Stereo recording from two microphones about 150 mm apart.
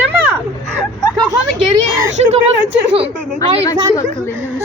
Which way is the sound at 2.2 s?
45° right (ahead or behind).